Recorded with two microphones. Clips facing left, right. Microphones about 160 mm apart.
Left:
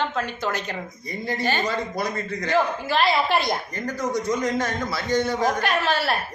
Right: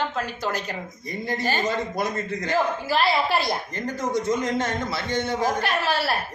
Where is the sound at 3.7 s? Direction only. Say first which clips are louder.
Even; 25° right (ahead or behind).